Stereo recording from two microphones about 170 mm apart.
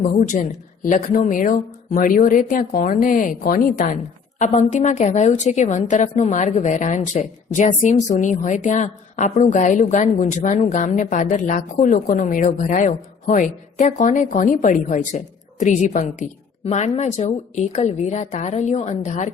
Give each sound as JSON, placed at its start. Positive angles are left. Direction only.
{"t": 0.1, "sound": "a woman's voice", "side_deg": 50}